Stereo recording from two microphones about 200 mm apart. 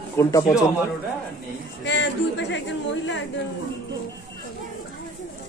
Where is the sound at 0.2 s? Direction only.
15° left (ahead or behind).